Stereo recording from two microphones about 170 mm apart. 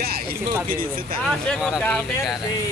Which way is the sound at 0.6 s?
55° right (ahead or behind).